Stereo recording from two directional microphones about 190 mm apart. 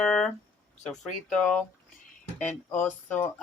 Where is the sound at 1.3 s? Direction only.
5° left (ahead or behind).